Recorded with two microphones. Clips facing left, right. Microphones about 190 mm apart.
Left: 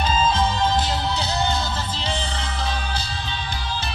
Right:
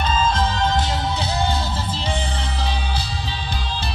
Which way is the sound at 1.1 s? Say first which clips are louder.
Right 1 dB; 30° right (ahead or behind).